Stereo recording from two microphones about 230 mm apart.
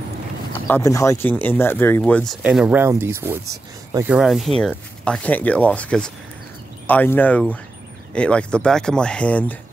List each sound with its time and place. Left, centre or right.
0.5 s speech: centre
2.4 s speech: centre